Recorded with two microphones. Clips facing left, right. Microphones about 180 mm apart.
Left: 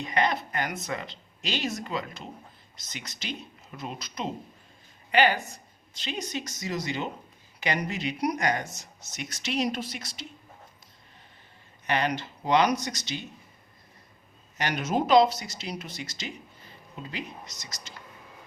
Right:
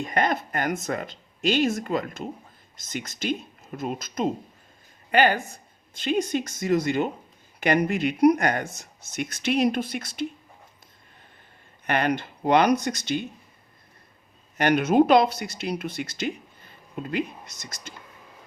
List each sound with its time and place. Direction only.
0.0 s speech: 50° right (ahead or behind)
11.9 s speech: 55° right (ahead or behind)
14.6 s speech: 60° right (ahead or behind)